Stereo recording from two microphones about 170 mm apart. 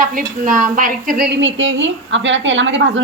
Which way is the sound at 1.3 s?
90° right.